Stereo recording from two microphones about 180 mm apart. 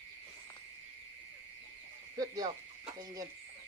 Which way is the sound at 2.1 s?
20° right (ahead or behind).